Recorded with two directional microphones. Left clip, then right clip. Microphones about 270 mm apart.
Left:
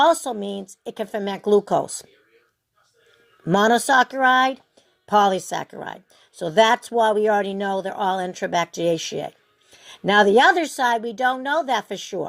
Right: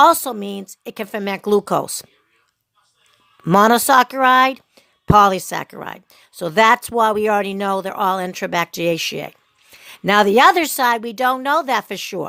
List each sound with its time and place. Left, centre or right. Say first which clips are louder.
0.0 s speech: right 5 dB; right
0.3 s speech: right 1 dB; right
0.9 s speech: right 2 dB; right
3.4 s speech: right 5 dB; right